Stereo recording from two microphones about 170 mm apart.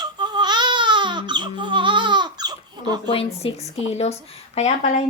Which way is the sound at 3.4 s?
40° left (ahead or behind).